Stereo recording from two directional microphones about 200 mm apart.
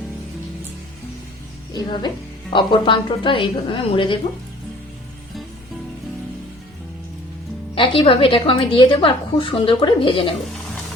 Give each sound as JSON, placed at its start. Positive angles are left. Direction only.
{"t": 1.7, "sound": "a woman's voice", "side_deg": 20}
{"t": 7.8, "sound": "a woman's voice", "side_deg": 25}